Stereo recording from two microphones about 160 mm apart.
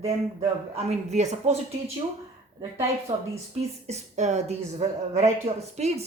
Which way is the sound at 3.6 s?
45° right (ahead or behind).